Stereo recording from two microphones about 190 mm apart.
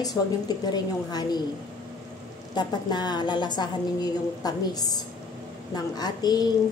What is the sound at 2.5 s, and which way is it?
A woman's voice, 20° left (ahead or behind).